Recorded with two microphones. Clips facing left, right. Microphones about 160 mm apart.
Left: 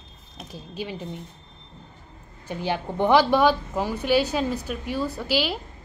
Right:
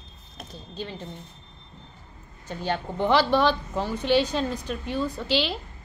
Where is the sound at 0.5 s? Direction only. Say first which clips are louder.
Left 3 dB; 10° left (ahead or behind).